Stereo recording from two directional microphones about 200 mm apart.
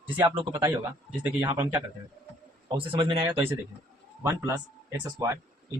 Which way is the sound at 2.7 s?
25° right (ahead or behind).